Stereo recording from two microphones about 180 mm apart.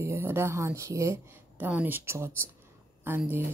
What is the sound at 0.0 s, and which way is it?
Speech, 15° right (ahead or behind).